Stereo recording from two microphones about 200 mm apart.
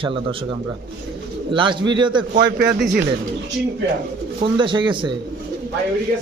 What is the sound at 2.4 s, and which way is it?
Speech, 50° right (ahead or behind).